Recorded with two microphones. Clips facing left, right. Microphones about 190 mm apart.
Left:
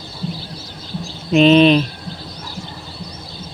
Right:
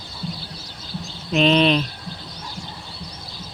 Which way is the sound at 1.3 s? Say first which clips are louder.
Left 7 dB; 5° left (ahead or behind).